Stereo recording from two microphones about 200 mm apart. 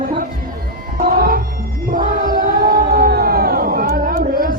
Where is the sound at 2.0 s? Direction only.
45° right (ahead or behind).